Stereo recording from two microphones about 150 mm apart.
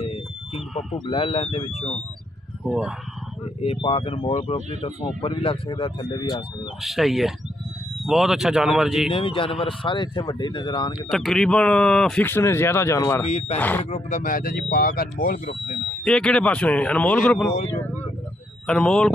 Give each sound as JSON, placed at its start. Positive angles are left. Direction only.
{"t": 1.0, "sound": "speech", "side_deg": 40}
{"t": 2.6, "sound": "speech", "side_deg": -5}
{"t": 3.6, "sound": "speech", "side_deg": 40}
{"t": 6.8, "sound": "speech", "side_deg": 0}
{"t": 9.1, "sound": "speech", "side_deg": 35}
{"t": 11.1, "sound": "speech", "side_deg": 0}
{"t": 13.2, "sound": "speech", "side_deg": 45}
{"t": 13.6, "sound": "speech", "side_deg": 10}
{"t": 13.8, "sound": "speech", "side_deg": 40}
{"t": 14.2, "sound": "speech", "side_deg": 75}
{"t": 16.0, "sound": "speech", "side_deg": 5}
{"t": 18.7, "sound": "speech", "side_deg": 5}